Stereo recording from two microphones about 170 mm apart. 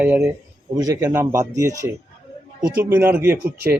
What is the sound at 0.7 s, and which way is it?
Speech, 20° right (ahead or behind).